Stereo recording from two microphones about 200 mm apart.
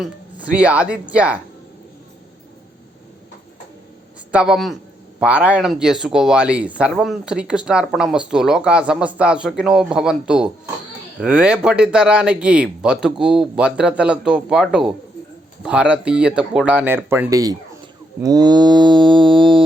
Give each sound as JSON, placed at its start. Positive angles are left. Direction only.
{"t": 0.0, "sound": "speech", "side_deg": -5}
{"t": 4.3, "sound": "speech", "side_deg": -5}
{"t": 18.2, "sound": "a sound", "side_deg": -20}